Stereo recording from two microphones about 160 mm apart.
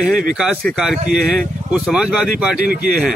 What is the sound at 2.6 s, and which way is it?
Speech, 60° right (ahead or behind).